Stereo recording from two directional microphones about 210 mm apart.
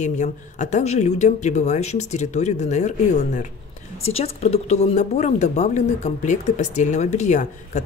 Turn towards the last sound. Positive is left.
turn(degrees=35)  # may be behind; listen again after turning